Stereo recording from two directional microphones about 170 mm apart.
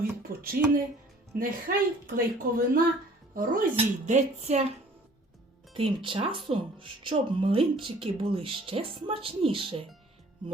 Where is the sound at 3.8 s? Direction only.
40° right (ahead or behind).